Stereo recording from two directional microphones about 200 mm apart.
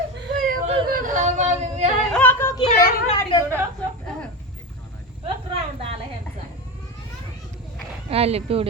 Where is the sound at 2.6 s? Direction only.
25° left (ahead or behind).